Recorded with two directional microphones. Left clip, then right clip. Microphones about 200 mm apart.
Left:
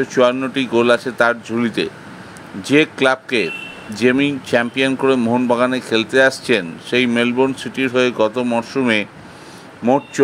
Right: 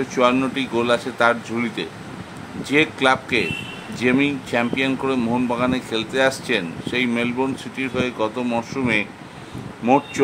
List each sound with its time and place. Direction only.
0.1 s speech: 20° left (ahead or behind)